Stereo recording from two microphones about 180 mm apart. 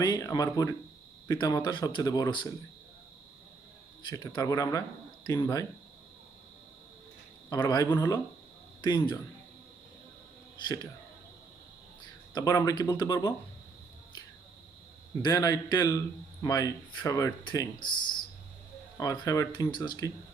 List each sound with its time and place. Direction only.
0.0 s a man's voice: 20° left (ahead or behind)
4.0 s a man's voice: 25° left (ahead or behind)
7.5 s a man's voice: 20° left (ahead or behind)
12.3 s a man's voice: 20° left (ahead or behind)
15.2 s a man's voice: 20° left (ahead or behind)
18.9 s a man's voice: 20° left (ahead or behind)